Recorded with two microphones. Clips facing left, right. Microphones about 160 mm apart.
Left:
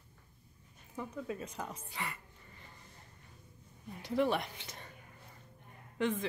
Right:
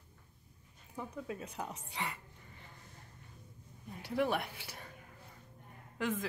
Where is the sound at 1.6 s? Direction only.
15° right (ahead or behind).